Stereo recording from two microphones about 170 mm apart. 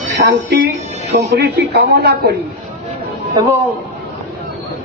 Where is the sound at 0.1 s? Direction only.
90° right.